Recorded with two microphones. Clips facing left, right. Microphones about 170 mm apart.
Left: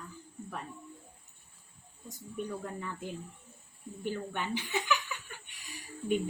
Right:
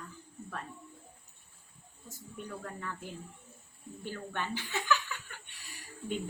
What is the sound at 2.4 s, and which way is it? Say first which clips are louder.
Speech: even; 15° left (ahead or behind).